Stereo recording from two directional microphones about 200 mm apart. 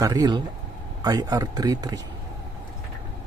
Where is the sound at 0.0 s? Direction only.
20° right (ahead or behind).